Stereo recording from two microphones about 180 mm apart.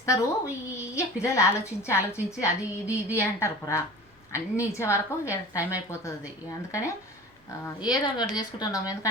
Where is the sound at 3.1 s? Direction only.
15° left (ahead or behind).